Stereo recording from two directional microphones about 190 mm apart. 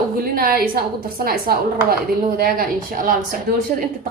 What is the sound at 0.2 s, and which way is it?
A woman's voice, 50° right (ahead or behind).